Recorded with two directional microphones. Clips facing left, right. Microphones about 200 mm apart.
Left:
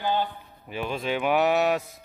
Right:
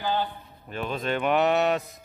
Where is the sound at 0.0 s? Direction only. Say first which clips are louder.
Left 1 dB; 15° left (ahead or behind).